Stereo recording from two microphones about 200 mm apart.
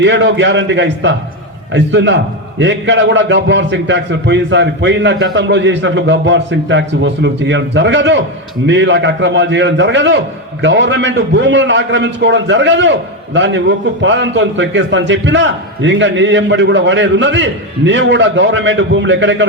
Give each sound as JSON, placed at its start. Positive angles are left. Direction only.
{"t": 0.0, "sound": "a man's voice", "side_deg": -60}